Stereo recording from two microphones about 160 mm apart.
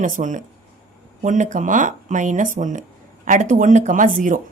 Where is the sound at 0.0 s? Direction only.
55° right (ahead or behind).